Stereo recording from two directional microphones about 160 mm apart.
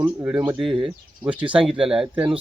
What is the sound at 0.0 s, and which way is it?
Speech, 15° right (ahead or behind).